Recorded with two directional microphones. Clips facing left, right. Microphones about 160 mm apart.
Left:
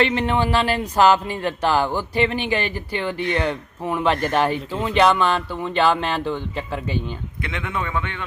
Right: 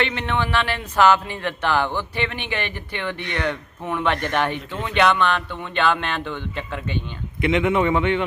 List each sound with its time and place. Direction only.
0.0 s speech: 35° left (ahead or behind)
7.4 s a man's voice: 20° right (ahead or behind)